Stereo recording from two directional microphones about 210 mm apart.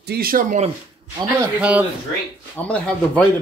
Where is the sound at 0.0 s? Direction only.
45° right (ahead or behind).